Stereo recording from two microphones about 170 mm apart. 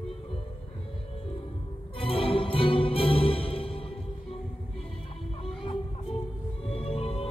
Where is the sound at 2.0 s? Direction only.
35° left (ahead or behind).